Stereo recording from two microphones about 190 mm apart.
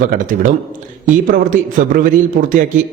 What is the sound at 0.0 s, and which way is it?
Speech, 45° right (ahead or behind).